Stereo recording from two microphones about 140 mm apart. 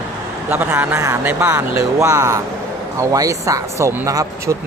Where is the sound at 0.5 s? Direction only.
15° right (ahead or behind).